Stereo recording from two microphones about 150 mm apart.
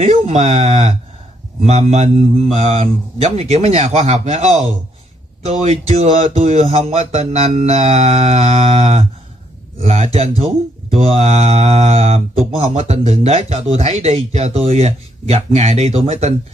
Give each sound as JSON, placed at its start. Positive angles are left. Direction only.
{"t": 0.0, "sound": "speech", "side_deg": -50}